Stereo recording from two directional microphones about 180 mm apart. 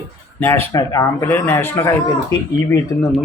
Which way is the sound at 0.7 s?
20° left (ahead or behind).